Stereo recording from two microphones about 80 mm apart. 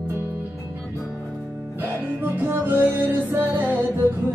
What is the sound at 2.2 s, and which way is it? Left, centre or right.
Music, right.